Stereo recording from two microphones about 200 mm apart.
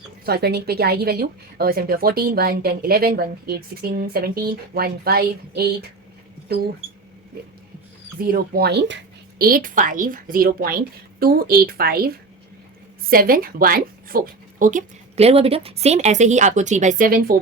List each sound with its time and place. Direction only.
0.3 s a woman's voice: 55° right (ahead or behind)
8.2 s a woman's voice: 50° right (ahead or behind)
9.4 s a woman's voice: 45° right (ahead or behind)